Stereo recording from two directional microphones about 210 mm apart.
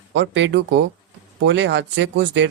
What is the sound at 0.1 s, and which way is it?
Speech, 60° right (ahead or behind).